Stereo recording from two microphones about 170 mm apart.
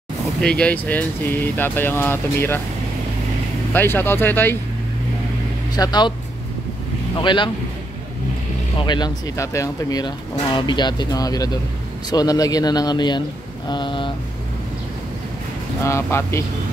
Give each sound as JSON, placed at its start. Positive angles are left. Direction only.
{"t": 0.4, "sound": "speech", "side_deg": 5}
{"t": 3.7, "sound": "speech", "side_deg": 15}
{"t": 5.8, "sound": "speech", "side_deg": 25}
{"t": 7.2, "sound": "speech", "side_deg": 30}
{"t": 8.7, "sound": "speech", "side_deg": 25}
{"t": 13.7, "sound": "a sound", "side_deg": 25}
{"t": 15.8, "sound": "speech", "side_deg": 15}